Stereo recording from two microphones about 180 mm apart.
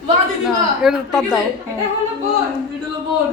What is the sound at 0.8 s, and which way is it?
Speech, 5° right (ahead or behind).